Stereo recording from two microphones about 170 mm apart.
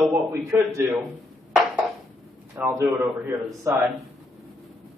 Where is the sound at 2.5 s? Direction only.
10° right (ahead or behind).